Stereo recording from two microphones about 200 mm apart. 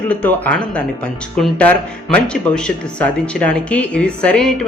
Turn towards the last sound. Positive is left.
turn(degrees=5)  # may be behind; listen again after turning